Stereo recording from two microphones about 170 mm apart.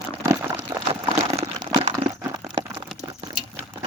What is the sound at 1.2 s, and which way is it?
Crumpling, 35° right (ahead or behind).